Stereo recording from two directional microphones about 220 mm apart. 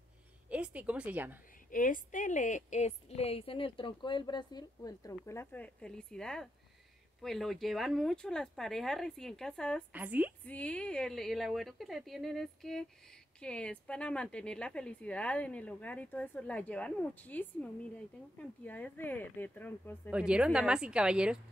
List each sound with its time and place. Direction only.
0.5 s a woman's voice: 5° right (ahead or behind)
1.7 s a woman's voice: 35° left (ahead or behind); by 9.8 s 5° left (ahead or behind)
9.9 s a woman's voice: 5° right (ahead or behind)
10.4 s speech: 5° left (ahead or behind)
18.7 s speech: 10° left (ahead or behind)
20.1 s speech: 5° right (ahead or behind)